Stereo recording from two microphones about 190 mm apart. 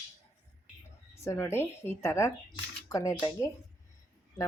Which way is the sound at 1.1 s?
15° left (ahead or behind).